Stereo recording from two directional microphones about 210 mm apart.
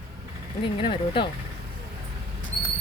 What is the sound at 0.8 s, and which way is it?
Speech, 25° left (ahead or behind).